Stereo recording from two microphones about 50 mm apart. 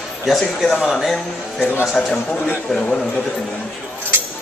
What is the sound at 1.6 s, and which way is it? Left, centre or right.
Speech, left.